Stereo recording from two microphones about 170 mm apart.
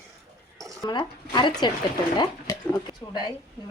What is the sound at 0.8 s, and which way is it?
A woman's voice, 25° left (ahead or behind).